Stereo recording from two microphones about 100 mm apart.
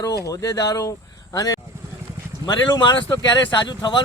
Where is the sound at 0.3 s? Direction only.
35° left (ahead or behind).